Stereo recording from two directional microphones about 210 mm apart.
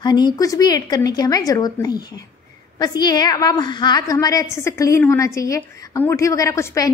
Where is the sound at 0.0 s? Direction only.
20° left (ahead or behind).